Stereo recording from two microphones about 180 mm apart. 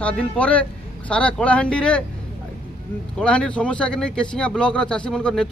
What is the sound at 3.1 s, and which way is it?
Speech, 5° left (ahead or behind).